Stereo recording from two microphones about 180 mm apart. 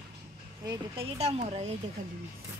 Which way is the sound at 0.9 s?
35° right (ahead or behind).